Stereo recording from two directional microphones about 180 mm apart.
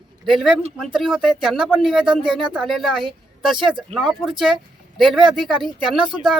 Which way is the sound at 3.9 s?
Centre (ahead or behind).